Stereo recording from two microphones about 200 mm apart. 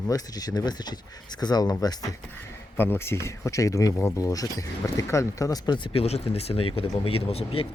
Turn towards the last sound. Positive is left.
turn(degrees=30)  # may be behind; listen again after turning